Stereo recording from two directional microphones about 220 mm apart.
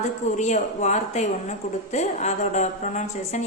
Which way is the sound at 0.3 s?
30° left (ahead or behind).